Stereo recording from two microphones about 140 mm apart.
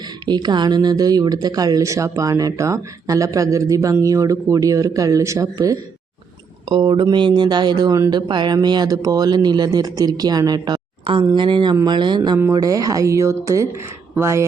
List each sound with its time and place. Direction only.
0.3 s speech: 30° right (ahead or behind)
6.7 s speech: 35° right (ahead or behind); by 14.4 s 20° right (ahead or behind)